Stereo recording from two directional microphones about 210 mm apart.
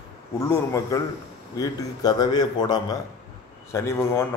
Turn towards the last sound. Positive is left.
turn(degrees=10)  # may be behind; listen again after turning